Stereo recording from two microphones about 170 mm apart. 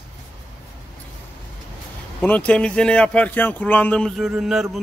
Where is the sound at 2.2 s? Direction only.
10° left (ahead or behind).